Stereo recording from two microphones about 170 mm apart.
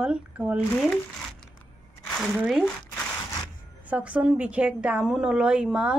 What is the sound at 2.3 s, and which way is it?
Speech, 5° right (ahead or behind).